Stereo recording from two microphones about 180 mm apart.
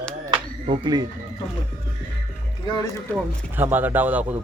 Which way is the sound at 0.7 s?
25° right (ahead or behind).